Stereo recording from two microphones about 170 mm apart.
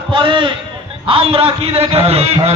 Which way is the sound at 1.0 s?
35° right (ahead or behind).